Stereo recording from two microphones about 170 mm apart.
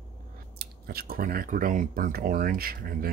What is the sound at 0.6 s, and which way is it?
Speech, 65° right (ahead or behind).